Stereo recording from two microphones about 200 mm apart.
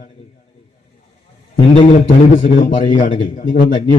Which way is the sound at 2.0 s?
45° left (ahead or behind).